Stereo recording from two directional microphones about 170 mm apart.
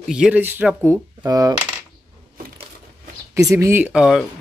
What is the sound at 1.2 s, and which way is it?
Coin, 20° right (ahead or behind).